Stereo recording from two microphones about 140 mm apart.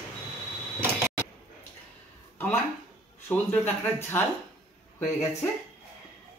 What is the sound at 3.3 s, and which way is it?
Speech, 15° left (ahead or behind).